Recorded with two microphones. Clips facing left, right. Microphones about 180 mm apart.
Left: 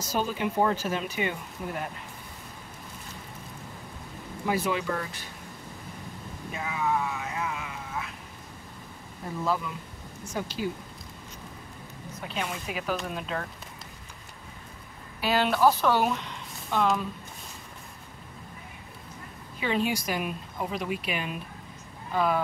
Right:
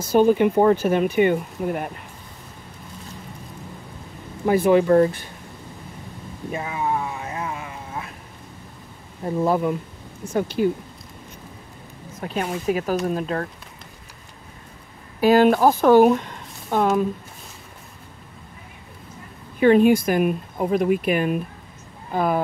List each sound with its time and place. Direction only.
0.0 s speech: 55° right (ahead or behind)
4.5 s speech: 50° right (ahead or behind)
6.5 s vehicle: 45° right (ahead or behind)
9.4 s speech: 50° right (ahead or behind)
12.2 s speech: 45° right (ahead or behind)
15.1 s speech: 45° right (ahead or behind)
19.6 s speech: 50° right (ahead or behind)